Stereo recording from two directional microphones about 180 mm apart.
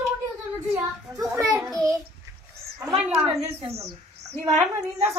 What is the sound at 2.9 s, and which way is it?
Speech, centre (ahead or behind).